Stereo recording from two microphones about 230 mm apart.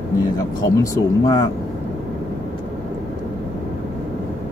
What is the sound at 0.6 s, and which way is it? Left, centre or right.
Speech, centre.